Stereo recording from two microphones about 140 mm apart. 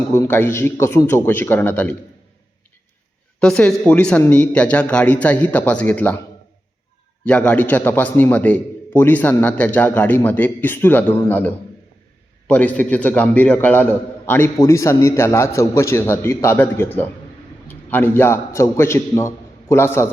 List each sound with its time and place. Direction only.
0.1 s a man's voice: 15° left (ahead or behind)
3.4 s a man's voice: 5° left (ahead or behind)
7.3 s a man's voice: 10° left (ahead or behind)